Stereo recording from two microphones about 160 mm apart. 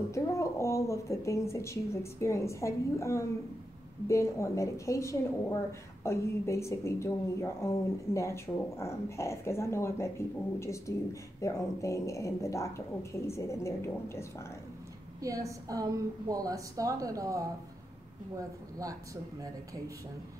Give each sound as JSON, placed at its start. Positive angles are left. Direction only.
{"t": 0.1, "sound": "a woman's voice", "side_deg": 20}
{"t": 15.1, "sound": "a woman's voice", "side_deg": -20}